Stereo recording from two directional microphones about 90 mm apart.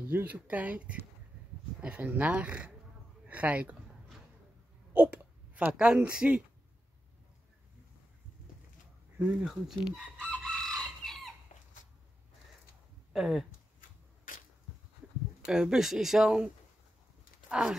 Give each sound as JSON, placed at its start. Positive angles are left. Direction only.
{"t": 0.0, "sound": "speech", "side_deg": -20}
{"t": 4.9, "sound": "a sound", "side_deg": -15}
{"t": 9.4, "sound": "speech", "side_deg": -5}
{"t": 10.3, "sound": "chicken", "side_deg": 10}
{"t": 13.1, "sound": "speech", "side_deg": -5}
{"t": 15.4, "sound": "speech", "side_deg": -10}
{"t": 17.5, "sound": "speech", "side_deg": -10}